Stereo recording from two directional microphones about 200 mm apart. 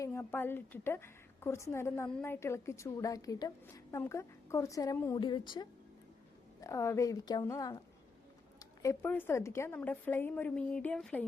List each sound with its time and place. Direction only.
0.0 s a woman's voice: 10° left (ahead or behind)